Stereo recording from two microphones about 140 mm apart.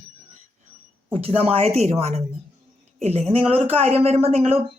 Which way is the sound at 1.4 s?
45° right (ahead or behind).